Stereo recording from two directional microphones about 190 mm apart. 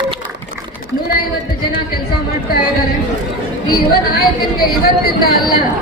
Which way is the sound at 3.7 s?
55° left (ahead or behind).